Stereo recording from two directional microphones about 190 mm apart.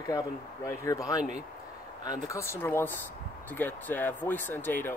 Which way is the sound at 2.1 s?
15° left (ahead or behind).